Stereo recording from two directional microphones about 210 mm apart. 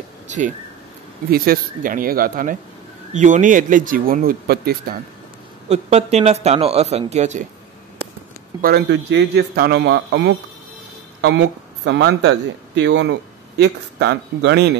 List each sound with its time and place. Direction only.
1.3 s a man's voice: 45° right (ahead or behind)
5.7 s speech: 30° right (ahead or behind)
8.5 s a man's voice: 45° right (ahead or behind)